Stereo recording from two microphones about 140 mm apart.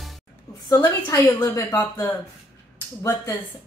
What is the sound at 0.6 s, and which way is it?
Speech, 25° left (ahead or behind).